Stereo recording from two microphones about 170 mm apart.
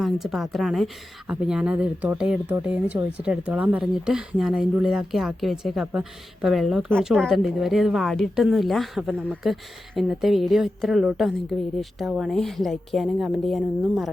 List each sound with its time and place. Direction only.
0.0 s speech: centre (ahead or behind)